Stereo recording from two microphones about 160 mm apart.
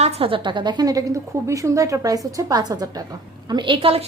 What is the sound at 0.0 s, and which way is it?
A woman's voice, 40° right (ahead or behind).